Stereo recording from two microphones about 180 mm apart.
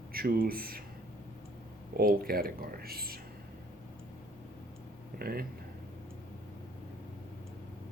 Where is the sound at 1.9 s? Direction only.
55° right (ahead or behind).